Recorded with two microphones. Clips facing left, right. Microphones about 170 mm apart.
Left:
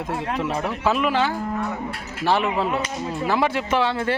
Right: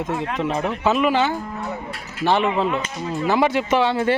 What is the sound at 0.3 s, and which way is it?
A man's voice, 5° left (ahead or behind).